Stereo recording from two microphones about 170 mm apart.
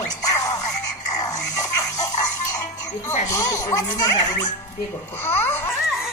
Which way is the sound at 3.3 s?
20° left (ahead or behind).